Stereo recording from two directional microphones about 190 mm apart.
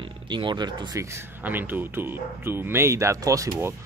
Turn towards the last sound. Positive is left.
turn(degrees=-15)  # may be behind; listen again after turning